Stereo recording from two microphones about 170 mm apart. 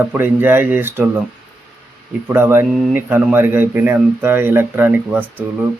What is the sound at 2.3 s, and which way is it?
Speech, 15° right (ahead or behind).